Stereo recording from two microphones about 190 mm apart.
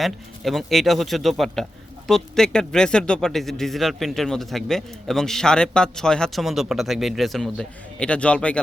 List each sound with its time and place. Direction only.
0.0 s speech: centre (ahead or behind)